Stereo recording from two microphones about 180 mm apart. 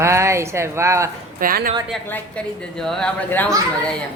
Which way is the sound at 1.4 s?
55° right (ahead or behind).